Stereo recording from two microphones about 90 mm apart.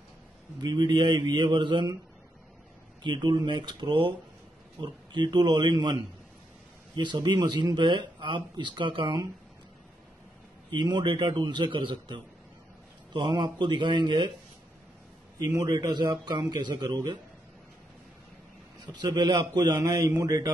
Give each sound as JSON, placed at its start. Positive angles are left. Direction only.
{"t": 0.6, "sound": "speech", "side_deg": -50}
{"t": 3.0, "sound": "speech", "side_deg": -60}
{"t": 7.0, "sound": "speech", "side_deg": -55}
{"t": 10.7, "sound": "speech", "side_deg": -55}
{"t": 15.3, "sound": "a man's voice", "side_deg": -35}
{"t": 18.9, "sound": "a man's voice", "side_deg": -50}
{"t": 20.1, "sound": "a man's voice", "side_deg": -35}